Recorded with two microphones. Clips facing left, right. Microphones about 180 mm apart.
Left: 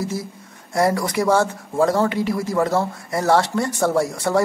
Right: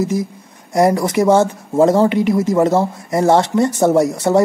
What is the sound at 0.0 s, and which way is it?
Speech, 20° right (ahead or behind).